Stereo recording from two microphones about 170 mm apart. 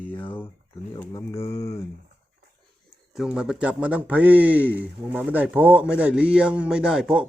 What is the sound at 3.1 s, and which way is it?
Speech, 5° right (ahead or behind).